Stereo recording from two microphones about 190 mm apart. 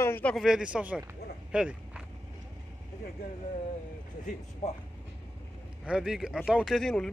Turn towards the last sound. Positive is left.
turn(degrees=5)  # may be behind; listen again after turning